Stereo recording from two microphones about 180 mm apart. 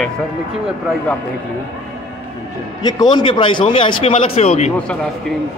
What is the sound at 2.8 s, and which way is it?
Speech, 25° left (ahead or behind).